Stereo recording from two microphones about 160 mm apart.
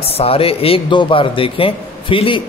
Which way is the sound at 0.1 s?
35° left (ahead or behind).